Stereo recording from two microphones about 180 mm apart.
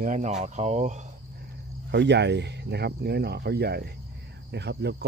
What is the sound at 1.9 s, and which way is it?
Speech, 70° right (ahead or behind).